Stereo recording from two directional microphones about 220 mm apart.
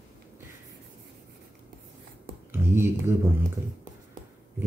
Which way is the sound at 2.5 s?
10° right (ahead or behind).